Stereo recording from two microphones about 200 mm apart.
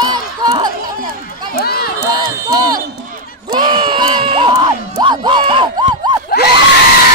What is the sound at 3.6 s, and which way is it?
Crowd, 25° right (ahead or behind).